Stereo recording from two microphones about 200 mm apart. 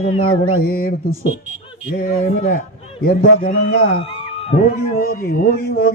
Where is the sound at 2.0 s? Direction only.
45° left (ahead or behind).